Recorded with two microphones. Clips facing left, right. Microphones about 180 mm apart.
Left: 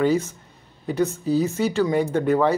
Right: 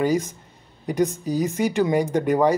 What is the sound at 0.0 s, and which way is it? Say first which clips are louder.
Speech: left 1 dB; 10° right (ahead or behind).